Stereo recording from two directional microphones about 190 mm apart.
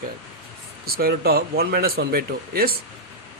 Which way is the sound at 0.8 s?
50° right (ahead or behind).